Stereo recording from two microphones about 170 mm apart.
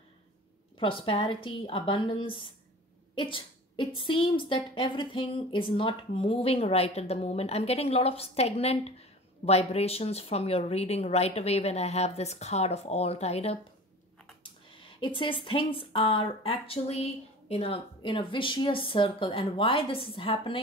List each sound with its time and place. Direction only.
0.7 s speech: 30° left (ahead or behind)